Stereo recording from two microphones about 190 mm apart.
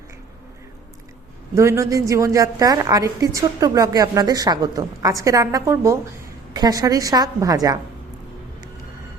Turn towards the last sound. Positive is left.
turn(degrees=-20)  # may be behind; listen again after turning